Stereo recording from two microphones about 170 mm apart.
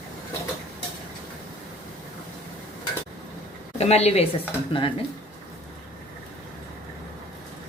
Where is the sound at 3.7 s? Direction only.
40° left (ahead or behind).